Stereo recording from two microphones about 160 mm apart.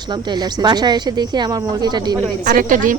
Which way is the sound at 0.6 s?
25° right (ahead or behind).